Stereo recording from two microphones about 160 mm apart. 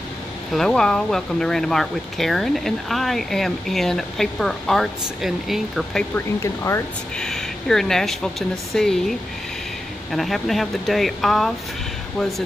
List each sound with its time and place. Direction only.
0.5 s speech: 5° left (ahead or behind)
6.1 s speech: 15° left (ahead or behind)
7.2 s speech: 5° left (ahead or behind)
10.1 s speech: centre (ahead or behind)